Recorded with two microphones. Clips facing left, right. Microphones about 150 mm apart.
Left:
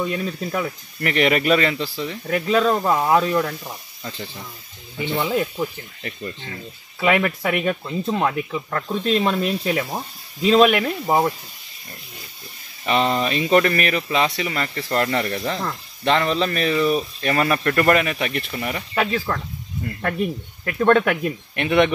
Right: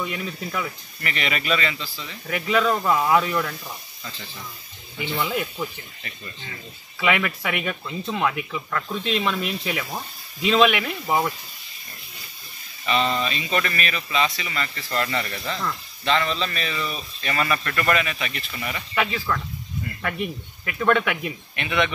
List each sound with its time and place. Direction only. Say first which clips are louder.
0.0 s speech: left 5 dB; 35° left (ahead or behind)
1.0 s speech: left 9 dB; 55° left (ahead or behind)
2.2 s speech: left 3 dB; 35° left (ahead or behind)
5.1 s speech: left 4 dB; 30° left (ahead or behind)
12.8 s speech: left 3 dB; 60° left (ahead or behind)
16.0 s speech: left 4 dB; 55° left (ahead or behind)